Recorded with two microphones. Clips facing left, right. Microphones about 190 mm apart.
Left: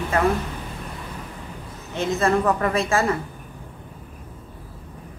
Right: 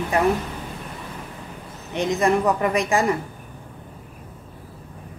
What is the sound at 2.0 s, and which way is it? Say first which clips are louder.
Speech: right 1 dB; 15° right (ahead or behind).